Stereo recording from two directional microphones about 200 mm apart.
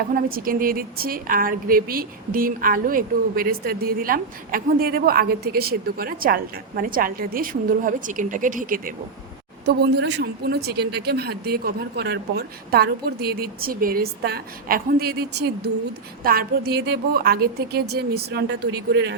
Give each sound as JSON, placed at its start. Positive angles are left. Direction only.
{"t": 0.1, "sound": "a woman's voice", "side_deg": -45}
{"t": 9.6, "sound": "a woman's voice", "side_deg": -60}